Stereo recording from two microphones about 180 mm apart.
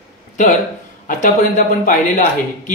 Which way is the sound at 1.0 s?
45° left (ahead or behind).